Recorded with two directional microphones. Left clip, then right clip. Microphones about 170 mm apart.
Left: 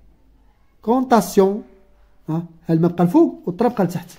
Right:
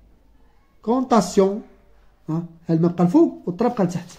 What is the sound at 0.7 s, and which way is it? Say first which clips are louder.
Speech: left 3 dB; 40° left (ahead or behind).